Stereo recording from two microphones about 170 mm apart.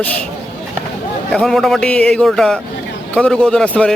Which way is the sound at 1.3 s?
5° left (ahead or behind).